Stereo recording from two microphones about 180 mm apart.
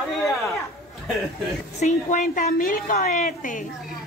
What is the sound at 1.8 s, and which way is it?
A woman's voice, 45° left (ahead or behind).